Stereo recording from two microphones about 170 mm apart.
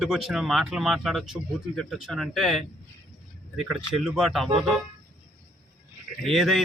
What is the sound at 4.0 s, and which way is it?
Speech, centre (ahead or behind).